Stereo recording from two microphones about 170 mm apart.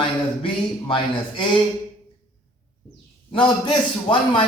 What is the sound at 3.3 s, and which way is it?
A man's voice, 25° left (ahead or behind).